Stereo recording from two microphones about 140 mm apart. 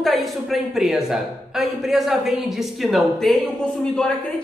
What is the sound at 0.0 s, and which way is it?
A woman's voice, centre (ahead or behind).